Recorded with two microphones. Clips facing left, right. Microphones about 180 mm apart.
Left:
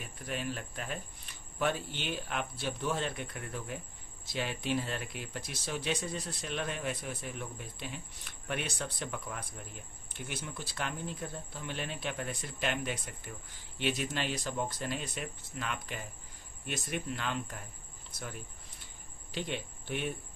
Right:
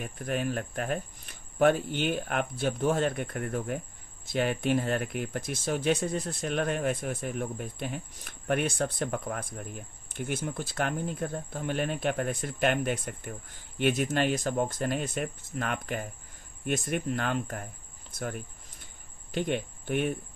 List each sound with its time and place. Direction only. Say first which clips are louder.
0.0 s speech: right 7 dB; 50° right (ahead or behind)